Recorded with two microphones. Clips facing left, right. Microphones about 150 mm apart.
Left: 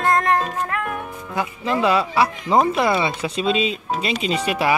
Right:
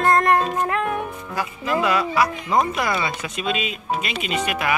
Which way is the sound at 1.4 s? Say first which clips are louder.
Left 2 dB; 30° left (ahead or behind).